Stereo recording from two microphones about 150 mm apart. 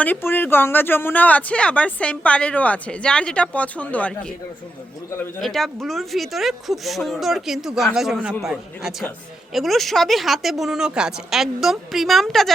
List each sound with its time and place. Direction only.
0.0 s speech: 15° left (ahead or behind)
5.4 s speech: centre (ahead or behind)